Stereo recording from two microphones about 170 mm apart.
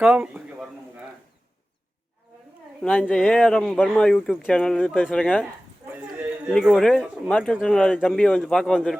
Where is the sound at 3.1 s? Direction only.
5° left (ahead or behind).